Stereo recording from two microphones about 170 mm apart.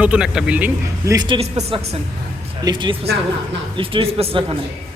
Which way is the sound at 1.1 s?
30° right (ahead or behind).